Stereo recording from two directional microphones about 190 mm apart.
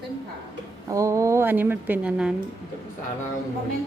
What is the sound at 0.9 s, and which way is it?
A woman's voice, 15° right (ahead or behind).